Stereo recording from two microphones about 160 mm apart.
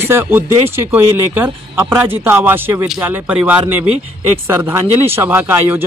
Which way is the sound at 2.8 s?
5° right (ahead or behind).